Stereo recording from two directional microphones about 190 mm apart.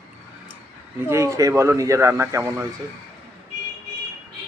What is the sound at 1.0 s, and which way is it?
A woman's voice, 15° right (ahead or behind).